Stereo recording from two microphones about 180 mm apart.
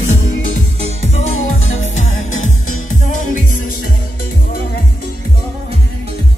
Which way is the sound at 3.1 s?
45° left (ahead or behind).